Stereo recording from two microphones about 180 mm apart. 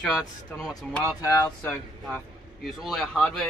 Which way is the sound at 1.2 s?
15° left (ahead or behind).